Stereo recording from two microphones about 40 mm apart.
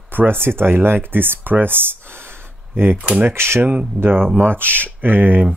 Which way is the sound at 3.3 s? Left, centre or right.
Right.